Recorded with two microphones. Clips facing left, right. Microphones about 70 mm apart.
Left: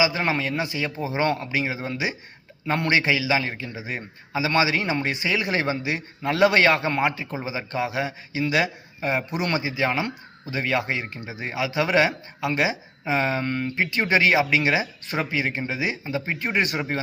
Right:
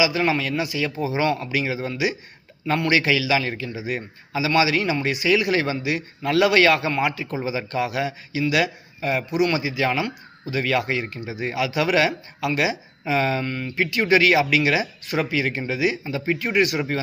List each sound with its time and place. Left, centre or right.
0.0 s speech: left
3.0 s speech: left